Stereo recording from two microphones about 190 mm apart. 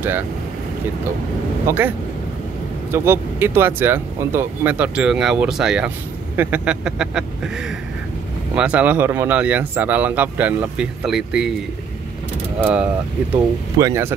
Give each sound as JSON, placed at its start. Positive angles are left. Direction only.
{"t": 1.7, "sound": "speech", "side_deg": -10}
{"t": 8.5, "sound": "speech", "side_deg": -5}
{"t": 12.5, "sound": "mechanisms", "side_deg": -5}
{"t": 13.7, "sound": "speech", "side_deg": -15}